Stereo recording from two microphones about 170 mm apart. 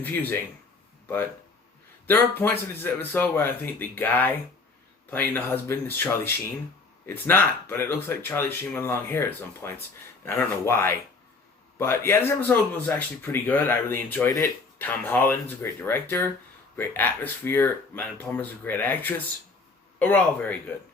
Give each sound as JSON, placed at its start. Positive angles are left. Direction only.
{"t": 0.0, "sound": "speech", "side_deg": 10}